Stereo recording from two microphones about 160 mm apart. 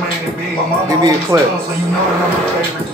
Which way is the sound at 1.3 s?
20° right (ahead or behind).